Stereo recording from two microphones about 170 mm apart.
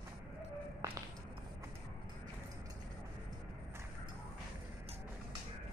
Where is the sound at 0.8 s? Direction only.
20° right (ahead or behind).